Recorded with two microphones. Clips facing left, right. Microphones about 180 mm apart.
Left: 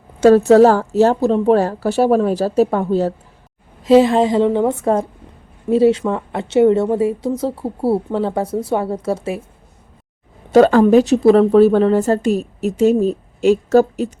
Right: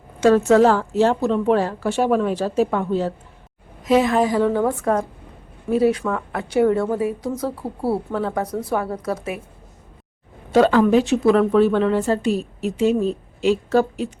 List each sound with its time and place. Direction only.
0.2 s a woman's voice: 35° left (ahead or behind)
10.5 s speech: 45° left (ahead or behind)